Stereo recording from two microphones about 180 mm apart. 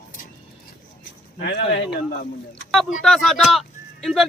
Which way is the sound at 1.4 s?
70° left (ahead or behind).